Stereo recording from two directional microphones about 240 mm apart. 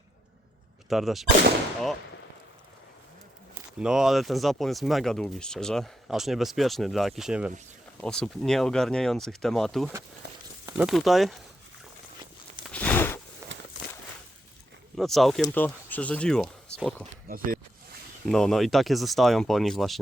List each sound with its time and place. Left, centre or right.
0.9 s speech: centre
3.5 s speech: centre
10.2 s a sound: right
10.7 s speech: centre
12.6 s a sound: centre
13.4 s a sound: centre
14.9 s speech: centre
17.2 s speech: right
18.3 s speech: centre